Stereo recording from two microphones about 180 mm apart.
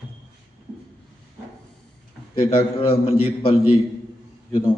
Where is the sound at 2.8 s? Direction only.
30° left (ahead or behind).